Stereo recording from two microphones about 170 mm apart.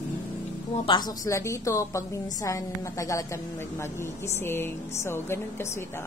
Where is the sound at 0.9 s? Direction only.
25° left (ahead or behind).